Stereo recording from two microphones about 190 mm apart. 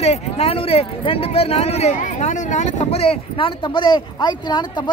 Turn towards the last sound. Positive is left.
turn(degrees=25)  # may be behind; listen again after turning